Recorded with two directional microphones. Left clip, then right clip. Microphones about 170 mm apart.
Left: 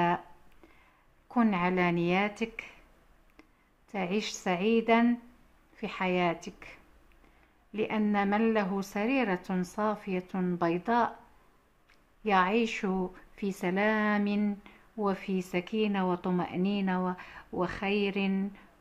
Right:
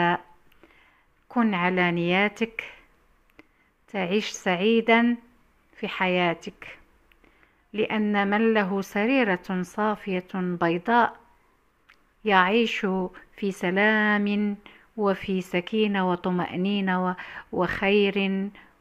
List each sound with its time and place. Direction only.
1.3 s speech: 15° right (ahead or behind)
3.9 s a woman's voice: 20° right (ahead or behind)